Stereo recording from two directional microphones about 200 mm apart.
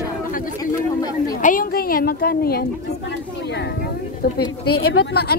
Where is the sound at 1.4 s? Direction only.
45° left (ahead or behind).